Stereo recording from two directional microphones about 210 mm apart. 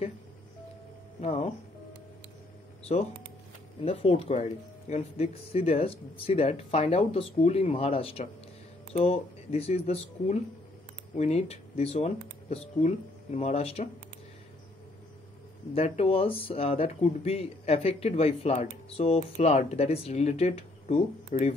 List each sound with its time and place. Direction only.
1.2 s speech: 30° left (ahead or behind)
3.8 s speech: 30° left (ahead or behind)
15.7 s speech: 30° left (ahead or behind)